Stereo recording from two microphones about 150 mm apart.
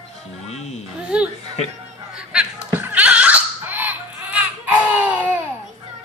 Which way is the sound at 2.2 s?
5° right (ahead or behind).